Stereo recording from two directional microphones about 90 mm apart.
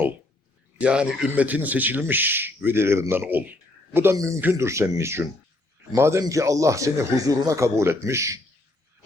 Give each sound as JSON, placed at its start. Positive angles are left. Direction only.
{"t": 0.8, "sound": "a man's voice", "side_deg": -10}